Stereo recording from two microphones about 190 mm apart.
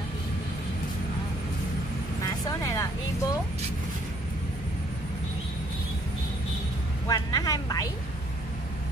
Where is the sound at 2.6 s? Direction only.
15° left (ahead or behind).